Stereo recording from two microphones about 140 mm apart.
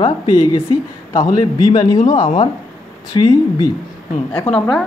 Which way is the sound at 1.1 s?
25° left (ahead or behind).